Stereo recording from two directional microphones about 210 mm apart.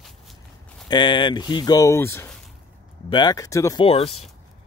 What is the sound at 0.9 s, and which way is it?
Speech, 20° left (ahead or behind).